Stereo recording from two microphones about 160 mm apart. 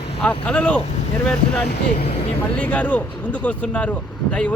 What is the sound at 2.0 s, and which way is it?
Speech, 40° left (ahead or behind).